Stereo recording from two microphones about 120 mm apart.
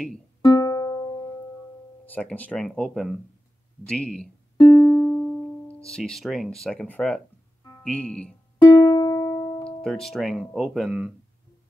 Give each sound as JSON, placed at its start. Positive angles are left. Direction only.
{"t": 0.5, "sound": "music", "side_deg": 30}
{"t": 2.0, "sound": "speech", "side_deg": 15}
{"t": 4.6, "sound": "music", "side_deg": 40}
{"t": 4.8, "sound": "music", "side_deg": 25}
{"t": 5.9, "sound": "speech", "side_deg": 5}
{"t": 8.7, "sound": "music", "side_deg": 30}
{"t": 9.7, "sound": "speech", "side_deg": 5}